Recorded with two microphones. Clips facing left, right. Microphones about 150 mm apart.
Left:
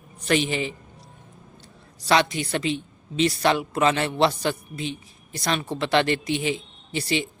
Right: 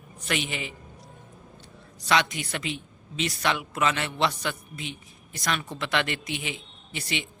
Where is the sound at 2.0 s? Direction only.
35° left (ahead or behind).